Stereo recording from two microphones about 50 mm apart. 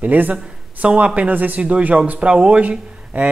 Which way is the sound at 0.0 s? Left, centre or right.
Right.